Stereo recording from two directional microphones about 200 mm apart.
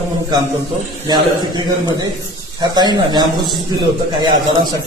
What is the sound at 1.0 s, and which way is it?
Speech, 20° right (ahead or behind).